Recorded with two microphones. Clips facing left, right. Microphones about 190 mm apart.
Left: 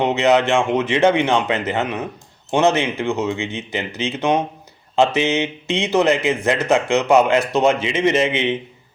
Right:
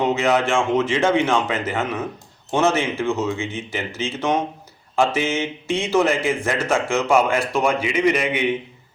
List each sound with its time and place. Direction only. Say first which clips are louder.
0.0 s speech: left 3 dB; 20° left (ahead or behind)